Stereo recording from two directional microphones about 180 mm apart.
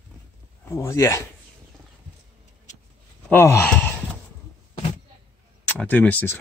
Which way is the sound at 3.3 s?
10° left (ahead or behind).